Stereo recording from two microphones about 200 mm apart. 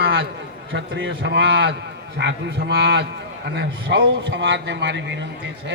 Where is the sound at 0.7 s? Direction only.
70° right (ahead or behind).